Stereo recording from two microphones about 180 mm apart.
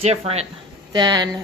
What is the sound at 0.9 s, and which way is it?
Speech, 25° right (ahead or behind).